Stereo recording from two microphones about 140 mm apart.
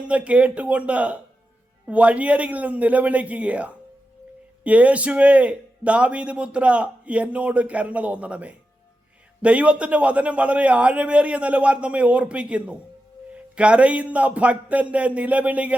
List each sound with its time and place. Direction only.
0.1 s a man's voice: 10° right (ahead or behind)